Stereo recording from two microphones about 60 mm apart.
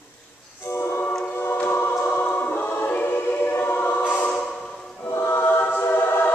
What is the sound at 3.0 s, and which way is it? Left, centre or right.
Music, left.